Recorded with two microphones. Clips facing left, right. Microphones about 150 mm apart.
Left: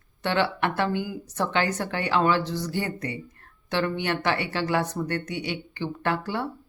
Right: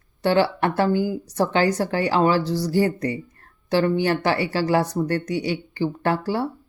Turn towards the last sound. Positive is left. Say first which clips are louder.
# right 5 dB
turn(degrees=-35)  # may be behind; listen again after turning